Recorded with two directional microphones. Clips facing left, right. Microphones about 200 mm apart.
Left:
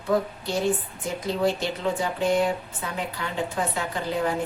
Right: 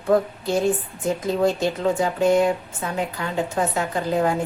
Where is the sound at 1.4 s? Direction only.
45° right (ahead or behind).